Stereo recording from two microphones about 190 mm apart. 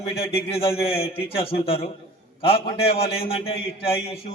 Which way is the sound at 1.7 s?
30° left (ahead or behind).